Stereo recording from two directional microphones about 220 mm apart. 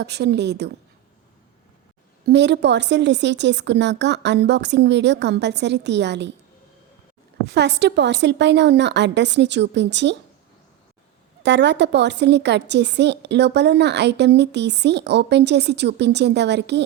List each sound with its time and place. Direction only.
0.0 s a woman's voice: 50° right (ahead or behind)
2.2 s a woman's voice: 50° right (ahead or behind)
7.4 s a woman's voice: 50° right (ahead or behind)
11.4 s a woman's voice: 50° right (ahead or behind)